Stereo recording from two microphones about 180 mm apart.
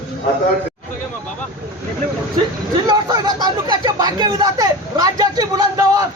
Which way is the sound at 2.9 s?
20° right (ahead or behind).